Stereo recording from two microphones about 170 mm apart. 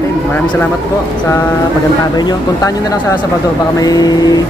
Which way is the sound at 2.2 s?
25° left (ahead or behind).